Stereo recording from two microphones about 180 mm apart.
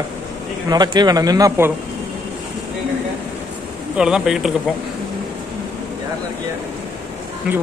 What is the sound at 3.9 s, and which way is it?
Speech, 5° right (ahead or behind).